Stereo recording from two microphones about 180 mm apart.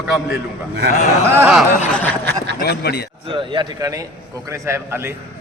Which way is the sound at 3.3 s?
25° right (ahead or behind).